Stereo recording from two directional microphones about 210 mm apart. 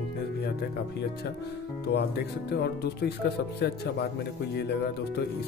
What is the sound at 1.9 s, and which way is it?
Speech, 50° left (ahead or behind).